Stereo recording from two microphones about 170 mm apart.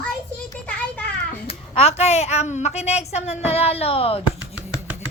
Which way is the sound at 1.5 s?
35° left (ahead or behind).